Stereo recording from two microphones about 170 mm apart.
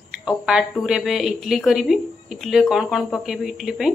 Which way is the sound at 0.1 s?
5° right (ahead or behind).